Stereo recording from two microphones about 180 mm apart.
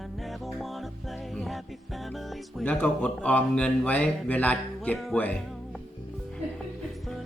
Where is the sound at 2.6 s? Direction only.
10° left (ahead or behind).